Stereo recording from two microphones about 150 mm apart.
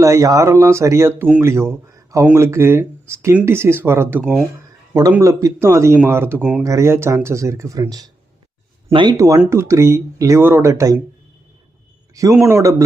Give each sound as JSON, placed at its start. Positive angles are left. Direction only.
{"t": 0.0, "sound": "speech", "side_deg": -20}
{"t": 9.1, "sound": "speech", "side_deg": -20}
{"t": 12.1, "sound": "speech", "side_deg": -20}